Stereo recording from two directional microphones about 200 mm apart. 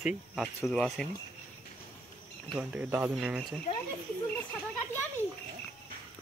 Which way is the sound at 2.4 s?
5° right (ahead or behind).